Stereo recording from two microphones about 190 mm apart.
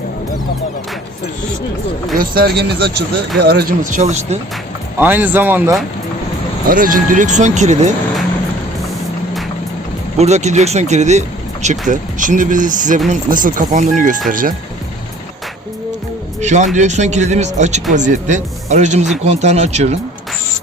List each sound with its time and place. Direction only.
2.1 s speech: 55° right (ahead or behind); by 4.4 s 35° right (ahead or behind)
4.9 s speech: 10° right (ahead or behind)
6.7 s speech: 45° right (ahead or behind)
10.2 s speech: 35° right (ahead or behind)
16.4 s speech: 40° right (ahead or behind)